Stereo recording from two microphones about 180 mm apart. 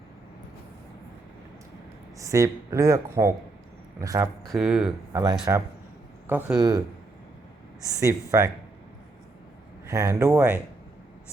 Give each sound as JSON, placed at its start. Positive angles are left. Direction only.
{"t": 2.1, "sound": "speech", "side_deg": -15}
{"t": 4.4, "sound": "speech", "side_deg": 0}
{"t": 5.1, "sound": "speech", "side_deg": -20}
{"t": 6.2, "sound": "a man's voice", "side_deg": -10}
{"t": 7.9, "sound": "speech", "side_deg": -15}
{"t": 9.8, "sound": "speech", "side_deg": -15}